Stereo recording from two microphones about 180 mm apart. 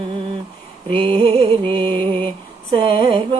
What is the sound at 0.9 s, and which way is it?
Music, 30° right (ahead or behind).